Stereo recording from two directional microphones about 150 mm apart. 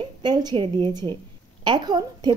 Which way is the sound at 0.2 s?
30° right (ahead or behind).